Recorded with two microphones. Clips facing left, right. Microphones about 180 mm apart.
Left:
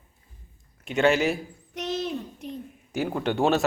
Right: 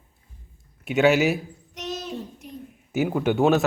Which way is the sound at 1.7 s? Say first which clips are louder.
Left 3 dB; 55° left (ahead or behind).